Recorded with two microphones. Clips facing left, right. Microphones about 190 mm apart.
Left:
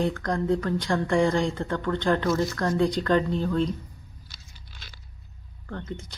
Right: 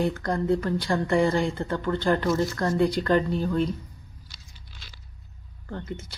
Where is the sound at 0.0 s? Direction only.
5° right (ahead or behind).